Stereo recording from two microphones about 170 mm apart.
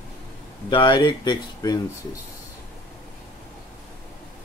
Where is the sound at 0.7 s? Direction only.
30° left (ahead or behind).